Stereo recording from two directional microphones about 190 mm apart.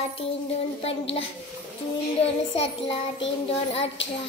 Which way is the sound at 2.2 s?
30° left (ahead or behind).